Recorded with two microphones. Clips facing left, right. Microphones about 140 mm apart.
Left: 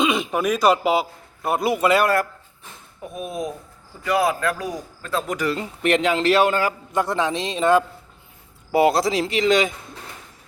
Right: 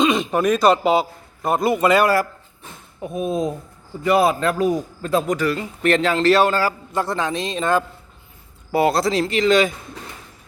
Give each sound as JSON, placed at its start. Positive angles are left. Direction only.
{"t": 0.0, "sound": "a man's voice", "side_deg": 5}
{"t": 3.2, "sound": "a man's voice", "side_deg": -25}
{"t": 5.4, "sound": "a man's voice", "side_deg": 20}